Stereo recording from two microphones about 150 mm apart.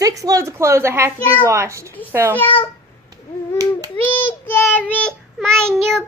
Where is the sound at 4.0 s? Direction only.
10° left (ahead or behind).